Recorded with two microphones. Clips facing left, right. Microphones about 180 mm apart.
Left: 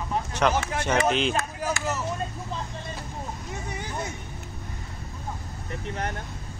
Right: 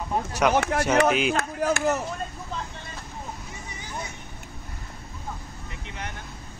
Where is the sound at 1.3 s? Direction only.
60° right (ahead or behind).